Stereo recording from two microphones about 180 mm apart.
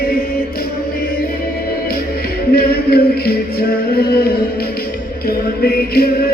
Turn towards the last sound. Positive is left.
turn(degrees=55)  # may be behind; listen again after turning